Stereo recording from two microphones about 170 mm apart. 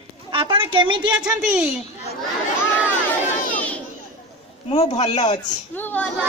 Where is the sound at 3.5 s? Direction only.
10° left (ahead or behind).